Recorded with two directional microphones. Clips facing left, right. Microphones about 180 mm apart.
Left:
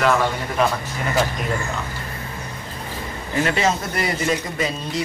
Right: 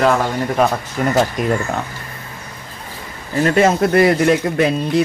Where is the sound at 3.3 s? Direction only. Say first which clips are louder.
Right 6 dB; 45° right (ahead or behind); by 5.0 s 60° right (ahead or behind).